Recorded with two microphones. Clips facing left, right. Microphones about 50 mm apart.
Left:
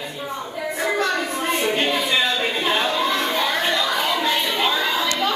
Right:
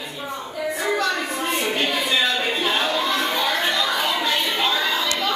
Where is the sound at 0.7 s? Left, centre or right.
Left.